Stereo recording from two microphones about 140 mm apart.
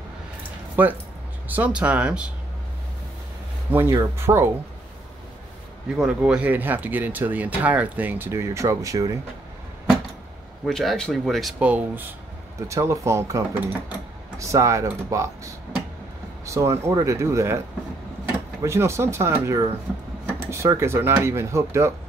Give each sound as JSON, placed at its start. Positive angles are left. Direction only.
{"t": 0.8, "sound": "speech", "side_deg": -15}
{"t": 3.9, "sound": "speech", "side_deg": -20}
{"t": 5.9, "sound": "speech", "side_deg": -5}
{"t": 10.7, "sound": "speech", "side_deg": 5}
{"t": 12.5, "sound": "speech", "side_deg": -20}